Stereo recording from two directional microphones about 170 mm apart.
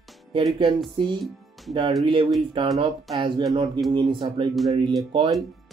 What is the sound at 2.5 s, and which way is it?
Speech, 35° right (ahead or behind).